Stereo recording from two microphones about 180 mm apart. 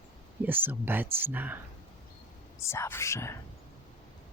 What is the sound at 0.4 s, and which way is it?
Speech, 10° right (ahead or behind).